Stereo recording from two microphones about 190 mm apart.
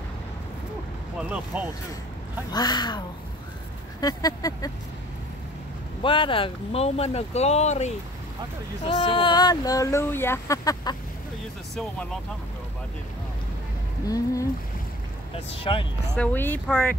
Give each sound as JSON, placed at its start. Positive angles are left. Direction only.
{"t": 2.5, "sound": "speech", "side_deg": 20}
{"t": 4.0, "sound": "speech", "side_deg": 20}
{"t": 6.0, "sound": "speech", "side_deg": 25}
{"t": 11.7, "sound": "speech", "side_deg": 5}
{"t": 14.0, "sound": "speech", "side_deg": 15}
{"t": 15.3, "sound": "speech", "side_deg": 30}
{"t": 16.2, "sound": "speech", "side_deg": 10}